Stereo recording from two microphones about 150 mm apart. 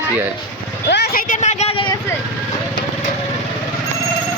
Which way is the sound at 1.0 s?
75° left (ahead or behind).